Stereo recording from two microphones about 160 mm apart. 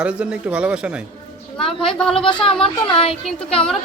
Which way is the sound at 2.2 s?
35° left (ahead or behind).